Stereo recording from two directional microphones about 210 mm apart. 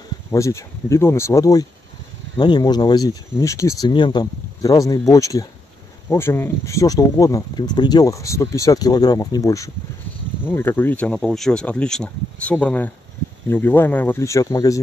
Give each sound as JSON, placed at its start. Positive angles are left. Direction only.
{"t": 0.3, "sound": "speech", "side_deg": 15}